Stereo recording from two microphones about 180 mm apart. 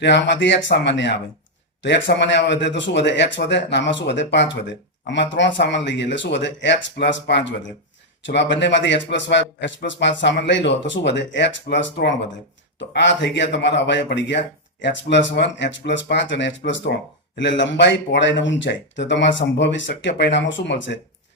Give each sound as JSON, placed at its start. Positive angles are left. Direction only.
{"t": 0.0, "sound": "speech", "side_deg": 75}
{"t": 10.2, "sound": "speech", "side_deg": 75}